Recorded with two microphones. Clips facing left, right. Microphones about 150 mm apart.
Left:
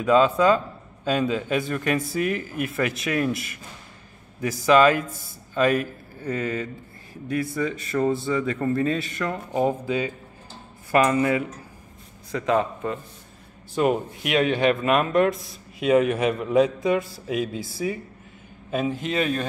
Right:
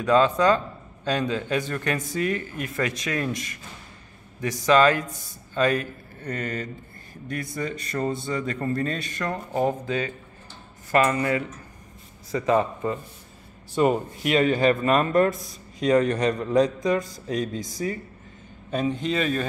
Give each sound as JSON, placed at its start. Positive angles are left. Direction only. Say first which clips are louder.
{"t": 0.0, "sound": "a man's voice", "louder": "left 1 dB", "side_deg": 5}
{"t": 12.3, "sound": "speech", "louder": "right 1 dB", "side_deg": 0}